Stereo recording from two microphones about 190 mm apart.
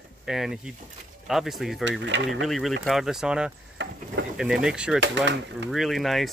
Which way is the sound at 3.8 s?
70° right (ahead or behind).